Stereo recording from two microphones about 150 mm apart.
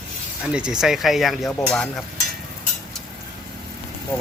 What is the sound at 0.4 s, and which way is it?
Speech, 5° right (ahead or behind).